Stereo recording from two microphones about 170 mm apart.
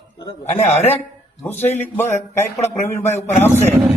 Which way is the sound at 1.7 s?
10° left (ahead or behind).